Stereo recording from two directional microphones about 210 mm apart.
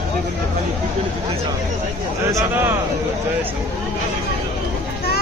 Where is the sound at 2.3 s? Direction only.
15° right (ahead or behind).